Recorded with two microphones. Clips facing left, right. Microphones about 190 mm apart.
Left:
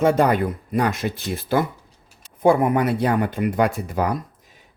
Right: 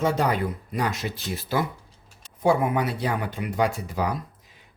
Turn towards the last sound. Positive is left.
turn(degrees=55)  # may be behind; listen again after turning